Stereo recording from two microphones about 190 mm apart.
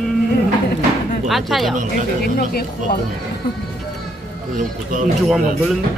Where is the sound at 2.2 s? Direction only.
55° left (ahead or behind).